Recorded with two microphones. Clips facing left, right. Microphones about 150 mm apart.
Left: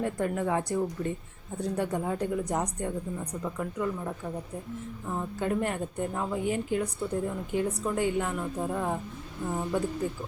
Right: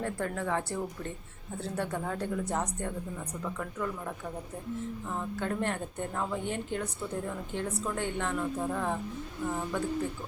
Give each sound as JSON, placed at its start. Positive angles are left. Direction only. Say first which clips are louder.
{"t": 0.0, "sound": "a woman's voice", "louder": "left 4 dB", "side_deg": 15}